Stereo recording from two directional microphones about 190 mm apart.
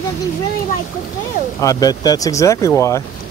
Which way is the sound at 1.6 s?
20° left (ahead or behind).